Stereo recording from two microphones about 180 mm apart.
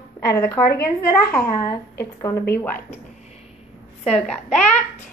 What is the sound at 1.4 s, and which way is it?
Speech, 55° left (ahead or behind).